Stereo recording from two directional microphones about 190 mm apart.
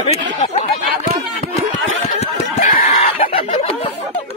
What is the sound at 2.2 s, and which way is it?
Snicker, 35° left (ahead or behind).